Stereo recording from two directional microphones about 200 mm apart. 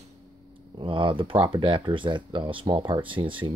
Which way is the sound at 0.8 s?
25° right (ahead or behind).